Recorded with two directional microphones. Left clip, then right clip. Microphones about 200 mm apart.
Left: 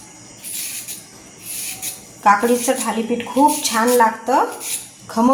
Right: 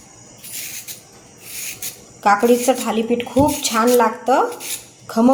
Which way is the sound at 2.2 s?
25° right (ahead or behind).